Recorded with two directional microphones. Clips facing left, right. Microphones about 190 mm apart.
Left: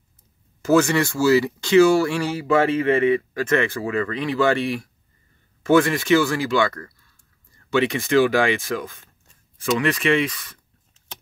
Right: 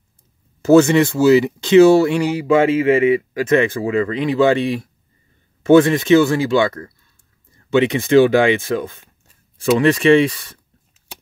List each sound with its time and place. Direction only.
0.7 s speech: 25° right (ahead or behind)
2.8 s speech: 10° right (ahead or behind); by 10.6 s 30° right (ahead or behind)